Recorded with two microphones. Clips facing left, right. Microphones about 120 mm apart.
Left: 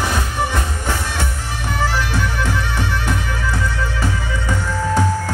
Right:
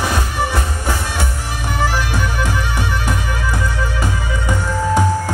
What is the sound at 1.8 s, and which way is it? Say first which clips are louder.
Music: right 1 dB; 15° right (ahead or behind).